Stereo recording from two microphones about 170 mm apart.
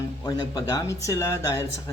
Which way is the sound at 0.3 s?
20° left (ahead or behind).